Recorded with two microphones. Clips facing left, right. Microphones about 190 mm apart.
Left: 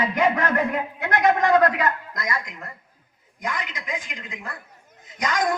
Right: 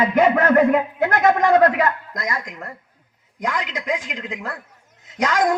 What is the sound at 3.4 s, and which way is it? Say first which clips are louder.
A woman's voice: right 5 dB; 85° right.